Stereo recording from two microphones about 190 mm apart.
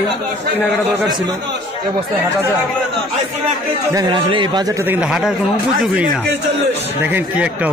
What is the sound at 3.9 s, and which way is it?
A man's voice, 20° right (ahead or behind).